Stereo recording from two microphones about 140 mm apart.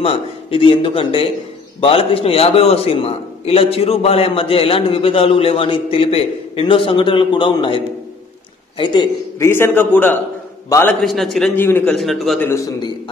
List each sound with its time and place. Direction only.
0.0 s a man's voice: 40° left (ahead or behind)
9.4 s a man's voice: 15° left (ahead or behind)
11.0 s a man's voice: centre (ahead or behind)
11.5 s a man's voice: 15° left (ahead or behind)
11.9 s a man's voice: centre (ahead or behind)
12.4 s a man's voice: 15° left (ahead or behind)